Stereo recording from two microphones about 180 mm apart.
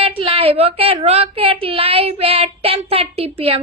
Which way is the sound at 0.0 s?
30° right (ahead or behind).